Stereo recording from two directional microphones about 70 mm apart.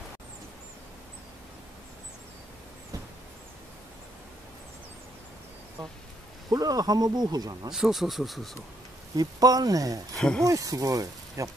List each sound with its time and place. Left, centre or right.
6.5 s speech: right
7.7 s speech: centre
9.1 s speech: right
10.1 s speech: centre
10.4 s speech: right